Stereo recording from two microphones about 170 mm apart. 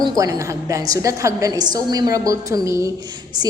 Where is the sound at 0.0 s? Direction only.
20° right (ahead or behind).